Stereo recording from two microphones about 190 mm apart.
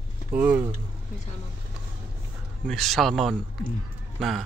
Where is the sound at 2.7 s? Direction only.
Centre (ahead or behind).